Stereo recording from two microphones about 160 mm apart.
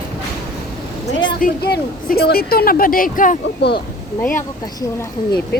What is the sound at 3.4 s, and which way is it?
Speech, 90° left.